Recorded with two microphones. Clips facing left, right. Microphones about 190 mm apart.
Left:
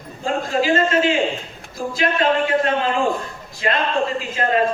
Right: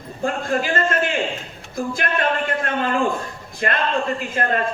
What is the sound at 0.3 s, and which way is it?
A man's voice, 55° right (ahead or behind).